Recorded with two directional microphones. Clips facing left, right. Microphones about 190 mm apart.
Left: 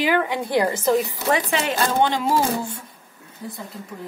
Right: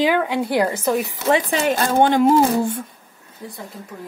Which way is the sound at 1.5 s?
45° right (ahead or behind).